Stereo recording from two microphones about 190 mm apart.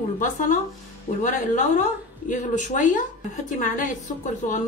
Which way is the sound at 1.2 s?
40° left (ahead or behind).